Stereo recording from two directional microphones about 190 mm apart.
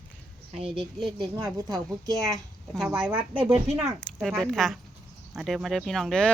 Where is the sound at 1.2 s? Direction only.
20° right (ahead or behind).